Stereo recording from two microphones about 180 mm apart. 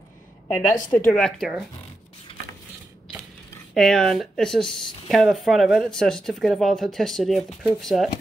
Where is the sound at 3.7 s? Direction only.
Centre (ahead or behind).